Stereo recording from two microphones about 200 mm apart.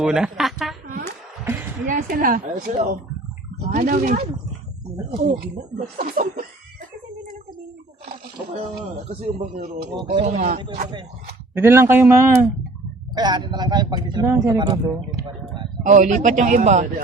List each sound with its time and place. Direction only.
0.0 s a sound: 5° right (ahead or behind)
1.9 s speech: 45° right (ahead or behind)
5.2 s speech: 45° right (ahead or behind)
8.5 s a man's voice: 30° right (ahead or behind)
10.6 s speech: 25° right (ahead or behind)
11.5 s speech: 10° right (ahead or behind)
13.1 s speech: 20° right (ahead or behind)
15.8 s a man's voice: 35° right (ahead or behind)